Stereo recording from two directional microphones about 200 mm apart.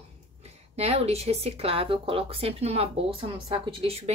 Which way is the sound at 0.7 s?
30° right (ahead or behind).